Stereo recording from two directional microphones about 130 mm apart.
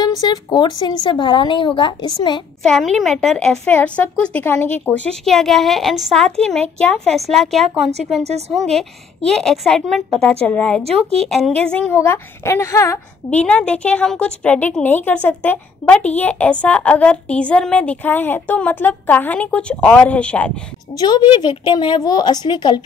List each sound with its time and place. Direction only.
0.0 s a woman's voice: 30° left (ahead or behind)
2.6 s a woman's voice: 5° left (ahead or behind)
5.3 s a child's voice: centre (ahead or behind)
8.2 s a woman's voice: 55° right (ahead or behind)
8.6 s a child's voice: 5° left (ahead or behind)
10.8 s speech: 50° right (ahead or behind)
11.1 s a child's voice: centre (ahead or behind)
11.9 s a woman's voice: 20° left (ahead or behind)
13.3 s a woman's voice: 10° left (ahead or behind)
20.9 s a woman's voice: 30° left (ahead or behind)